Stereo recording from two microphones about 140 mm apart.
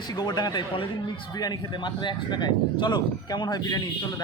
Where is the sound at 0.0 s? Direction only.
30° left (ahead or behind).